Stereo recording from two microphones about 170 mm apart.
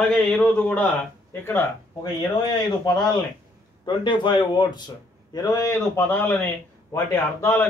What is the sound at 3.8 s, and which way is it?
A man's voice, 30° left (ahead or behind).